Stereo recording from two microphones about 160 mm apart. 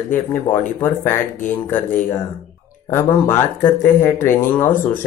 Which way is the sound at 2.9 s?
15° left (ahead or behind).